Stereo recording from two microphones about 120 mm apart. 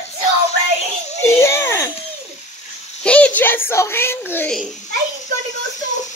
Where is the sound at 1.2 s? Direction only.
20° left (ahead or behind).